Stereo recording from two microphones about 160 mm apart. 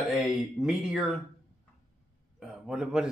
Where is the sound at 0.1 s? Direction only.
Centre (ahead or behind).